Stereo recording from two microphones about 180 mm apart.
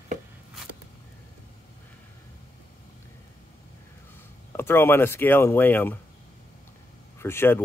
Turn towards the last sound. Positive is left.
turn(degrees=15)  # may be behind; listen again after turning